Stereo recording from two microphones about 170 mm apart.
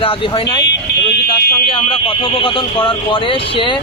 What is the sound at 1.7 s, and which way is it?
Speech, 30° left (ahead or behind).